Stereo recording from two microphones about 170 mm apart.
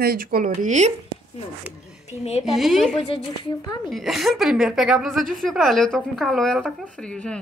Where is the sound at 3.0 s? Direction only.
35° left (ahead or behind).